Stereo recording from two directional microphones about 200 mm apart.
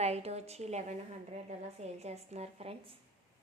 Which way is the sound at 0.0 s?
30° right (ahead or behind).